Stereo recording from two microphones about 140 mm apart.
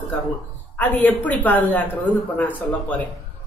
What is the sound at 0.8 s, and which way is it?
A woman's voice, 10° left (ahead or behind).